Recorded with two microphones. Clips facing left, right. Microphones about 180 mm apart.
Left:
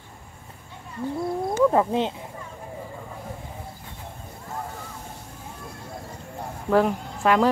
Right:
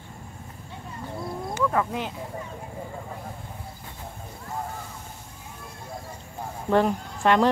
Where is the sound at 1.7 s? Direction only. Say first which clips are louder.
Left 5 dB; 30° left (ahead or behind).